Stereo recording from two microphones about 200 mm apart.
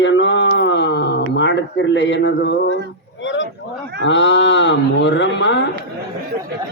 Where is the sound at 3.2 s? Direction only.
65° left (ahead or behind).